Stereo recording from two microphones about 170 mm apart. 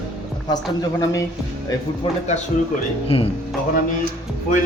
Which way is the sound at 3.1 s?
35° left (ahead or behind).